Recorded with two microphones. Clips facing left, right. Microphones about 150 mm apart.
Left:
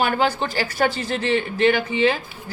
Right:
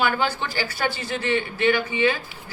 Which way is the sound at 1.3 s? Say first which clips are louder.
Left 3 dB; 35° left (ahead or behind).